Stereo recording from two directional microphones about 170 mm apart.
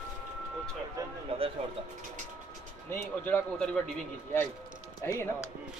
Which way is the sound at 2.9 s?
15° left (ahead or behind).